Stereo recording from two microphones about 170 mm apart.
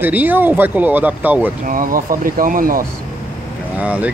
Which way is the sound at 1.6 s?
55° right (ahead or behind).